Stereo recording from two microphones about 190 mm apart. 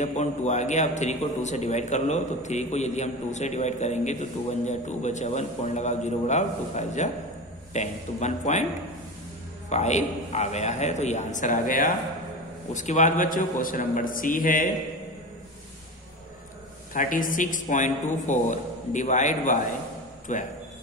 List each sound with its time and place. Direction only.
0.0 s a man's voice: 35° left (ahead or behind)
9.7 s a man's voice: 35° left (ahead or behind)
16.9 s a man's voice: 45° left (ahead or behind)